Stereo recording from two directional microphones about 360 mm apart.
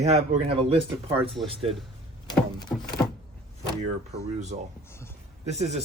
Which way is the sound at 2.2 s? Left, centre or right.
Centre.